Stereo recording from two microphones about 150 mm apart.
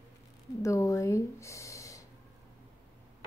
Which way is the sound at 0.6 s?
20° left (ahead or behind).